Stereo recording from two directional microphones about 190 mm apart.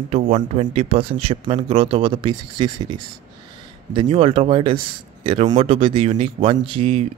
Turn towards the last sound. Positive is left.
turn(degrees=-30)  # may be behind; listen again after turning